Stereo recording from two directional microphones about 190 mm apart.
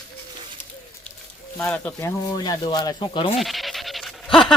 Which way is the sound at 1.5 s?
5° left (ahead or behind).